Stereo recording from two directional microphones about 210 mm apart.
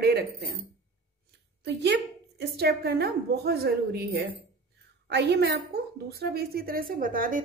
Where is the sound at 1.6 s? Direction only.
55° right (ahead or behind).